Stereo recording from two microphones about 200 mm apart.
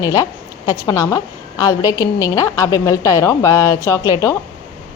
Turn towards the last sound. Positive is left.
turn(degrees=15)  # may be behind; listen again after turning